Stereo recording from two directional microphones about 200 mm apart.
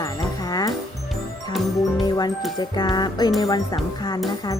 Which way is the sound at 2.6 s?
20° left (ahead or behind).